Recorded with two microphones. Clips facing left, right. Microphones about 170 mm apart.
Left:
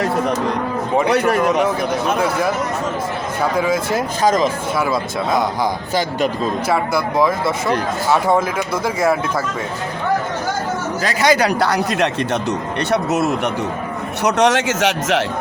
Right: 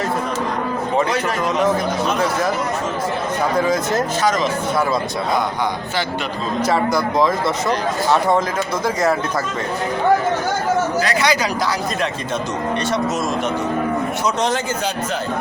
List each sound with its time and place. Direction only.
1.1 s speech: 60° left (ahead or behind)
1.4 s speech: 10° left (ahead or behind)
3.6 s speech: 10° left (ahead or behind)
6.7 s speech: 5° left (ahead or behind)
11.2 s speech: 55° left (ahead or behind)
14.3 s speech: 75° left (ahead or behind); by 15.2 s 90° left